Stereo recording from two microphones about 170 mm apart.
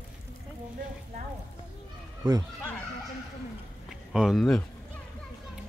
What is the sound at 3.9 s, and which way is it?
Speech, centre (ahead or behind).